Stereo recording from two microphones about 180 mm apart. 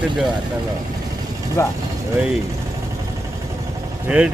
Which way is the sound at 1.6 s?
15° left (ahead or behind).